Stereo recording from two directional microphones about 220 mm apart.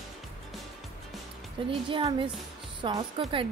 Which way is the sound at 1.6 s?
25° right (ahead or behind).